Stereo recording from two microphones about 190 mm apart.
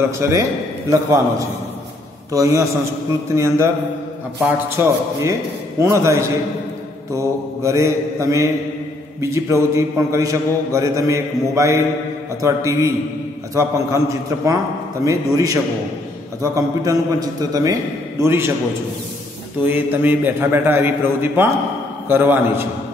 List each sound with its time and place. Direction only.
0.2 s a man's voice: 15° right (ahead or behind)
2.3 s a man's voice: 15° right (ahead or behind)
19.6 s a man's voice: 10° right (ahead or behind)